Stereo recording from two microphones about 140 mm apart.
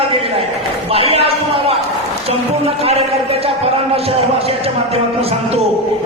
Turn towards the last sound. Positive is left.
turn(degrees=-45)  # may be behind; listen again after turning